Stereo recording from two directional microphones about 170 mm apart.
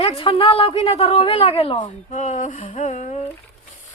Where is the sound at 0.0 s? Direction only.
35° left (ahead or behind).